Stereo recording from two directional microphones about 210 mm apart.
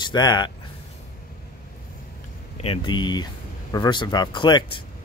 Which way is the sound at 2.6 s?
25° left (ahead or behind).